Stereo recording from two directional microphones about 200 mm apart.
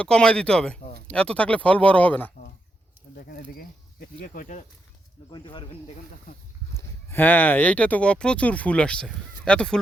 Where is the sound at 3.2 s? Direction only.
50° left (ahead or behind).